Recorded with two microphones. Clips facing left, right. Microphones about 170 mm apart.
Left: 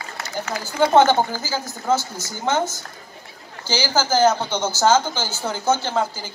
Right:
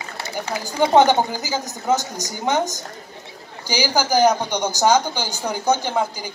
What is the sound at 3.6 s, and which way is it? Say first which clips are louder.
A woman's voice: right 1 dB; 15° right (ahead or behind).